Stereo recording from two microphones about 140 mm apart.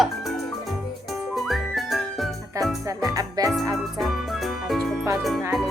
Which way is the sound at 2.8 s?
25° right (ahead or behind).